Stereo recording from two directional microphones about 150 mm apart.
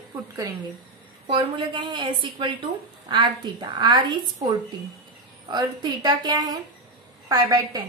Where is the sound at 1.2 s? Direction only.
35° right (ahead or behind).